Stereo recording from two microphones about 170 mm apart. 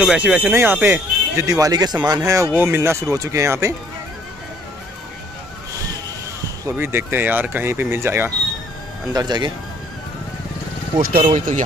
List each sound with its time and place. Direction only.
0.0 s speech: 5° right (ahead or behind)
6.6 s speech: 15° right (ahead or behind)
9.1 s speech: 25° right (ahead or behind)
11.3 s speech: 45° right (ahead or behind)